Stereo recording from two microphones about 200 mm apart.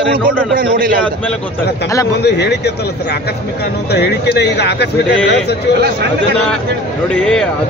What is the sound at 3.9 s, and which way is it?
Speech, 55° left (ahead or behind).